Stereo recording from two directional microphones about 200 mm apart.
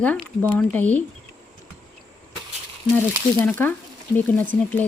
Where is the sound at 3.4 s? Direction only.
10° left (ahead or behind).